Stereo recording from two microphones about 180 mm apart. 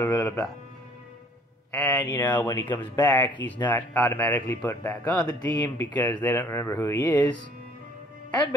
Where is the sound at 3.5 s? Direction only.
10° left (ahead or behind).